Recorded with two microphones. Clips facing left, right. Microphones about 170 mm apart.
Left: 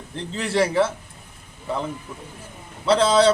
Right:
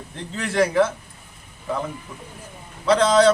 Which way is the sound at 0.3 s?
Centre (ahead or behind).